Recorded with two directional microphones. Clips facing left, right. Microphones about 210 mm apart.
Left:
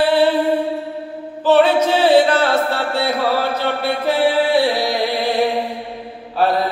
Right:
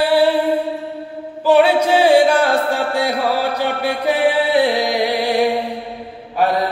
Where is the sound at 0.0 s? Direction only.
10° right (ahead or behind).